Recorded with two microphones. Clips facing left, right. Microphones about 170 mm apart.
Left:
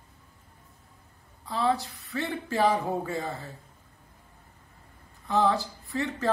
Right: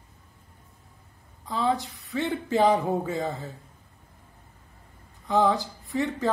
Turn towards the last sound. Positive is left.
turn(degrees=-20)  # may be behind; listen again after turning